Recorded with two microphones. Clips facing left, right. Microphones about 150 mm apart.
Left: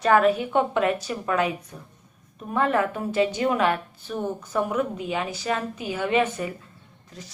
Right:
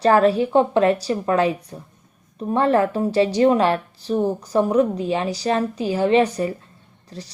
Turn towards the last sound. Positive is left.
turn(degrees=-35)  # may be behind; listen again after turning